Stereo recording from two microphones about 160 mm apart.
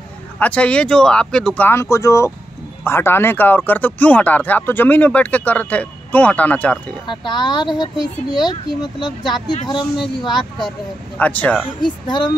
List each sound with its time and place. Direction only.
0.4 s speech: 5° left (ahead or behind)
7.1 s speech: 30° left (ahead or behind)
11.1 s speech: 10° left (ahead or behind)
11.8 s speech: 30° left (ahead or behind)